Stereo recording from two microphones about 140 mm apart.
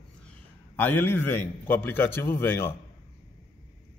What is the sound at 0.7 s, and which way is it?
A man's voice, 15° left (ahead or behind).